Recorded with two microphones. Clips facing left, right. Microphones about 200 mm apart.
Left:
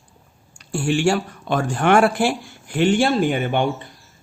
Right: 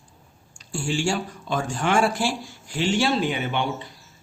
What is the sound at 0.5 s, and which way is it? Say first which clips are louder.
Speech: left 6 dB; 60° left (ahead or behind).